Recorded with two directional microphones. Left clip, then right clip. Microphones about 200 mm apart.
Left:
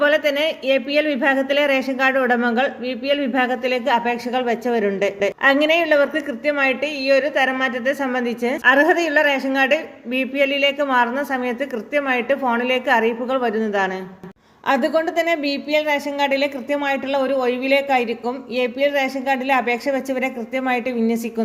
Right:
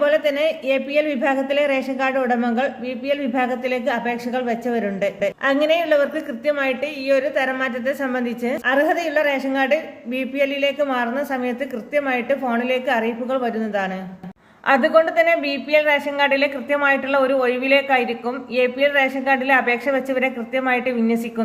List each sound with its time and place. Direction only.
0.0 s a man's voice: 15° left (ahead or behind)
14.7 s a woman's voice: 45° left (ahead or behind)